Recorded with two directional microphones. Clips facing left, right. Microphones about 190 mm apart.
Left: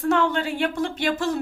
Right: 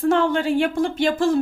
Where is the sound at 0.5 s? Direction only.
45° right (ahead or behind).